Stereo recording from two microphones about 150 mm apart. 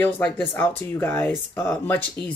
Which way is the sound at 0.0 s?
10° left (ahead or behind).